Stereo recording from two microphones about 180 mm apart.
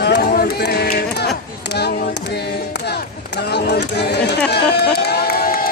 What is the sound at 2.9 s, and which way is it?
Speech, 65° left (ahead or behind).